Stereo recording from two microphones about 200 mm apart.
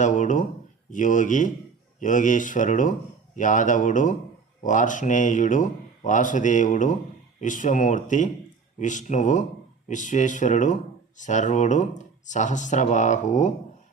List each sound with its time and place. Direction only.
0.0 s speech: 35° left (ahead or behind)